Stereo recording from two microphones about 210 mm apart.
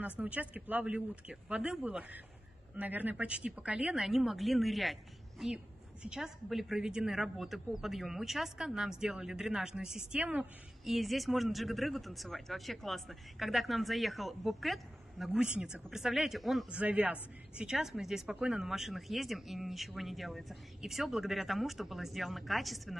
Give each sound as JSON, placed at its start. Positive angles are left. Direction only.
{"t": 0.2, "sound": "a woman's voice", "side_deg": -5}
{"t": 6.0, "sound": "a woman's voice", "side_deg": 0}